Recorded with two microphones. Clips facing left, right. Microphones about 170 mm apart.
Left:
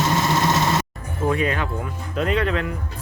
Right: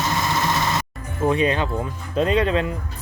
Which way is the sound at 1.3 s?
20° right (ahead or behind).